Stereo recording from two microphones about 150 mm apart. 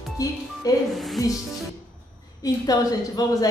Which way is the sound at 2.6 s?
25° left (ahead or behind).